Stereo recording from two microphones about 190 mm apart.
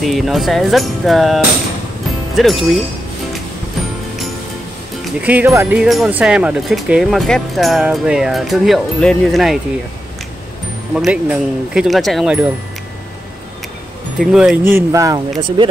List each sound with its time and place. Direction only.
0.0 s speech: centre (ahead or behind)
5.2 s speech: 10° right (ahead or behind)
11.0 s speech: 5° right (ahead or behind)
14.2 s speech: centre (ahead or behind)
14.7 s speech: 15° right (ahead or behind)